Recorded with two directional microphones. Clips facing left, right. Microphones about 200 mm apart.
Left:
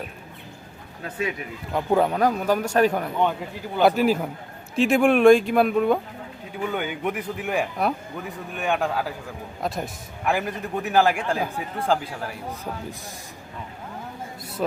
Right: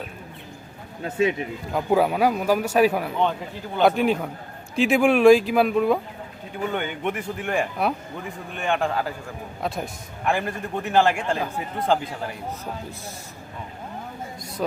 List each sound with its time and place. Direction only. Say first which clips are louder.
1.0 s speech: right 6 dB; 25° right (ahead or behind)
1.7 s a man's voice: even; 5° right (ahead or behind)